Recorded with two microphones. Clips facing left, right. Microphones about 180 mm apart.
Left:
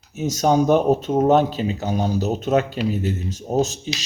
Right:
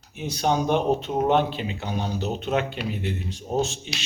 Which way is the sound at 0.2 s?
45° left (ahead or behind).